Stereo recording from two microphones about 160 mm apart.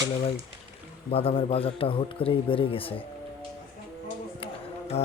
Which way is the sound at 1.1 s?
35° left (ahead or behind).